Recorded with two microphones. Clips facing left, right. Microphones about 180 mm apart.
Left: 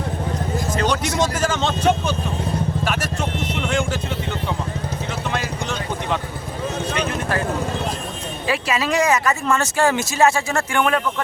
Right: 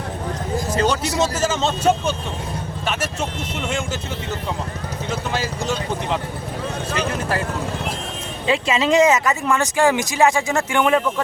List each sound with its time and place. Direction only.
0.8 s a man's voice: 30° right (ahead or behind)
8.4 s speech: 25° right (ahead or behind)